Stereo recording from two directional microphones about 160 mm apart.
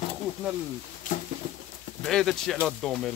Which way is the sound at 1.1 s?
50° left (ahead or behind).